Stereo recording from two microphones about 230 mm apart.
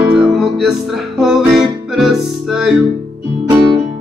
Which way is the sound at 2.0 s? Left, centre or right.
Centre.